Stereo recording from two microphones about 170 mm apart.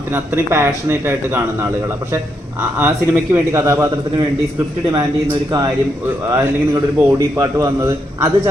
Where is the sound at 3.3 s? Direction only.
15° right (ahead or behind).